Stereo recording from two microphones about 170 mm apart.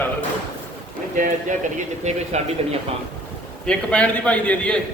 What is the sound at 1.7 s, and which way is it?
Speech, 40° right (ahead or behind).